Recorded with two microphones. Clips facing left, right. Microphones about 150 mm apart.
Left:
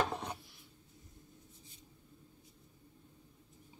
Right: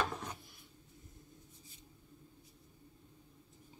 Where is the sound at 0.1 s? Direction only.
30° left (ahead or behind).